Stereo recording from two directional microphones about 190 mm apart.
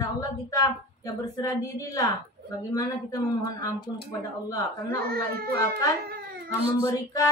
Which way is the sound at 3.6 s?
20° left (ahead or behind).